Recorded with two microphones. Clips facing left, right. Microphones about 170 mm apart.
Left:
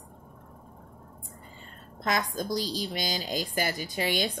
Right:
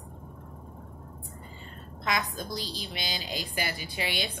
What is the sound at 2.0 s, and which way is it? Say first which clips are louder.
A woman's voice: left 3 dB; 45° left (ahead or behind).